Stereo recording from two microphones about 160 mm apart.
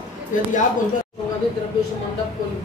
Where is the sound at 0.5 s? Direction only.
55° left (ahead or behind).